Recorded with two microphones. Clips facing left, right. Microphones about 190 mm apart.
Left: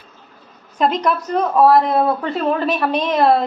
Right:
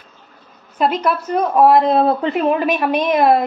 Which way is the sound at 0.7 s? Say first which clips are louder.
Even; 5° right (ahead or behind).